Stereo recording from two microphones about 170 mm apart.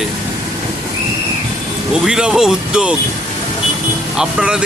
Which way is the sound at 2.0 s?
5° right (ahead or behind).